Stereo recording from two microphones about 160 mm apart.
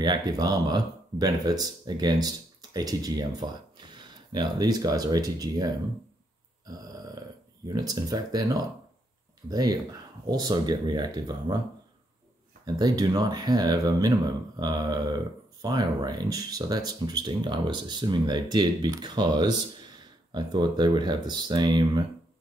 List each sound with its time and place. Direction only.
0.0 s speech: 25° right (ahead or behind)
6.6 s a sound: 25° right (ahead or behind)
9.5 s speech: 25° right (ahead or behind)
12.6 s speech: 25° right (ahead or behind)